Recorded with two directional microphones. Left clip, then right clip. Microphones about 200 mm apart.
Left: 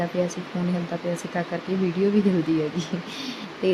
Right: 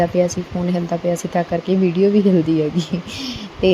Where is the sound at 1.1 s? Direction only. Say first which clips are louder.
Right 8 dB; 20° right (ahead or behind).